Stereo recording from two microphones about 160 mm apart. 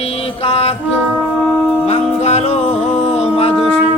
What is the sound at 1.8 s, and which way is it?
Music, 45° left (ahead or behind).